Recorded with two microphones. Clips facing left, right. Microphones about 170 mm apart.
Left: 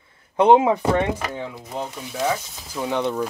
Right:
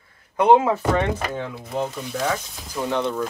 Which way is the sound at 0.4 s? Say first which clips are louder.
Left 1 dB; 20° left (ahead or behind).